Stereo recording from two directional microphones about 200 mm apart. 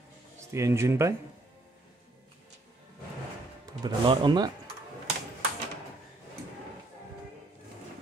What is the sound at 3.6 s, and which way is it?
Speech, 20° right (ahead or behind).